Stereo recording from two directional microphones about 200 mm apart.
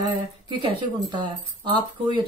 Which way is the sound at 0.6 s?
20° right (ahead or behind).